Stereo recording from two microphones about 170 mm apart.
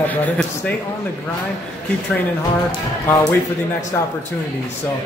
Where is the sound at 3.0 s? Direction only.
20° left (ahead or behind).